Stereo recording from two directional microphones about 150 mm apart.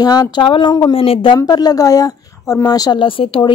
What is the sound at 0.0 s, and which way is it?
A woman's voice, 25° left (ahead or behind).